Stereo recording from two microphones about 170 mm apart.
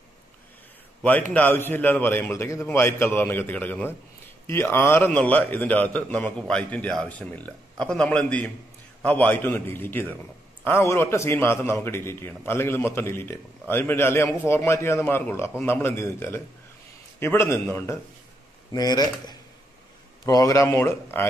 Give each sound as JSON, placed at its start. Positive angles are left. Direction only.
{"t": 1.3, "sound": "a man's voice", "side_deg": 10}